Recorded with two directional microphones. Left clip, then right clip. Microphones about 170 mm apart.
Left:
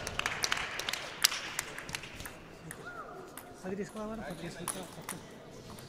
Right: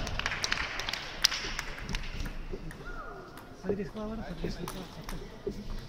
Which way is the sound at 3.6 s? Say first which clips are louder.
Right 7 dB; 55° left (ahead or behind).